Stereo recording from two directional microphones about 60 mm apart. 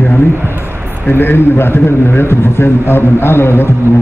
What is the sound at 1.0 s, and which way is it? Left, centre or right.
A man's voice, left.